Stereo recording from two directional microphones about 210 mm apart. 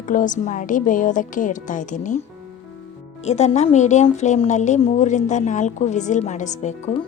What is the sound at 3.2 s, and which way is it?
Speech, 30° left (ahead or behind).